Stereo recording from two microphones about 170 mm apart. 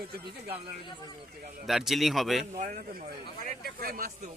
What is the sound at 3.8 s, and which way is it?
Speech, 60° right (ahead or behind).